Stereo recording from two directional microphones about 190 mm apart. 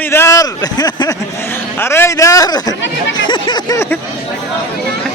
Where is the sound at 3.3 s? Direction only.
20° left (ahead or behind).